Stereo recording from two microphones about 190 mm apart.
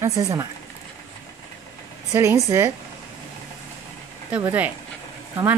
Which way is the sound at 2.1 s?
15° right (ahead or behind).